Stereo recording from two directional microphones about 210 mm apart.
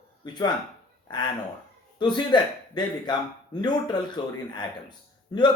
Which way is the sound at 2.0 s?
20° left (ahead or behind).